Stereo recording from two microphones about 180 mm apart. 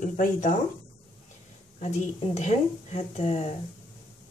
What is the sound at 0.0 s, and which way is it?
Speech, 45° left (ahead or behind).